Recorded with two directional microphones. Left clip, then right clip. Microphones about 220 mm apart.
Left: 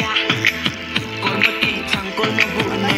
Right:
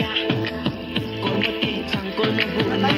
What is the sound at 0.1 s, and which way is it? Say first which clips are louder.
Music: left 6 dB; 10° left (ahead or behind).